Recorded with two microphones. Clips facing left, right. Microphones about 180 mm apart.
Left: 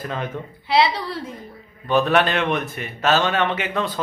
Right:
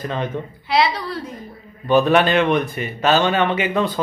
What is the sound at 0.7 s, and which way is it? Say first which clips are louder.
Speech: even; 30° left (ahead or behind).